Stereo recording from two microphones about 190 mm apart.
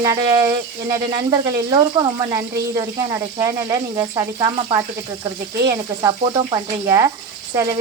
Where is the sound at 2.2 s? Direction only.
20° right (ahead or behind).